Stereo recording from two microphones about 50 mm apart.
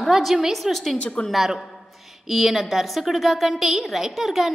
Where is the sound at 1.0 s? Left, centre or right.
Left.